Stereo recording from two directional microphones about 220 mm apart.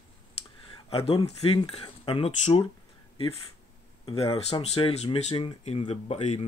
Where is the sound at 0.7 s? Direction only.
25° left (ahead or behind).